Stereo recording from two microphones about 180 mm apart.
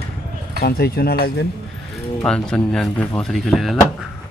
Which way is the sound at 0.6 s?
60° left (ahead or behind).